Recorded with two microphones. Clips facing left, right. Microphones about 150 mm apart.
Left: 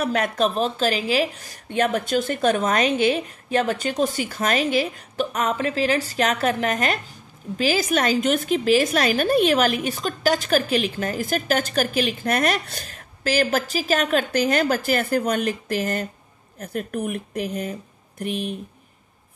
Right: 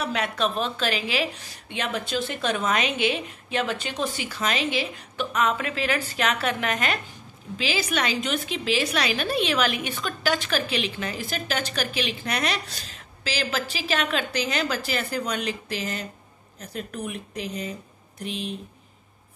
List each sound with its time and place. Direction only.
0.0 s a woman's voice: 45° left (ahead or behind)